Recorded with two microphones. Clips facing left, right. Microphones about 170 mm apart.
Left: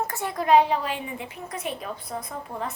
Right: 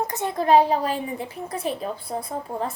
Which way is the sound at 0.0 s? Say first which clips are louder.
Right 3 dB; 20° right (ahead or behind).